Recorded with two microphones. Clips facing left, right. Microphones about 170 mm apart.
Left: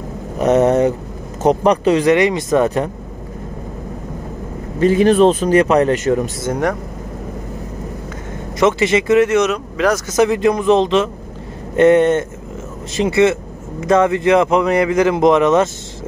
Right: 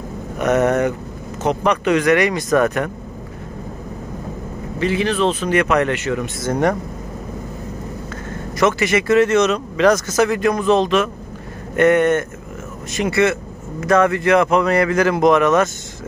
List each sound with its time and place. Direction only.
0.4 s speech: 30° left (ahead or behind)
4.7 s speech: 45° left (ahead or behind)
8.5 s speech: 25° left (ahead or behind); by 10.1 s 5° left (ahead or behind)
10.1 s speech: 20° left (ahead or behind)